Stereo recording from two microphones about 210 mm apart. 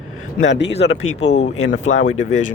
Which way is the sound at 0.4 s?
55° left (ahead or behind).